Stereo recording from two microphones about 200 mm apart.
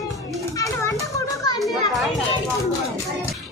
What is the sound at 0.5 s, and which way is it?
Children playing, 15° left (ahead or behind).